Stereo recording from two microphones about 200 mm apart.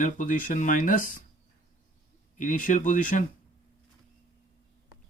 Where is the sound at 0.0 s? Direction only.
40° left (ahead or behind).